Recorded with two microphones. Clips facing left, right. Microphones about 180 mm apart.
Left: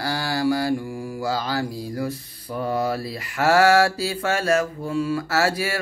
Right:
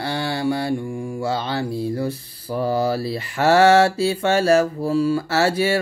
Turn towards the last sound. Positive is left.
turn(degrees=-30)  # may be behind; listen again after turning